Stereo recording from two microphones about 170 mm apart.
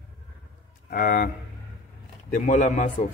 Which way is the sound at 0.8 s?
55° left (ahead or behind).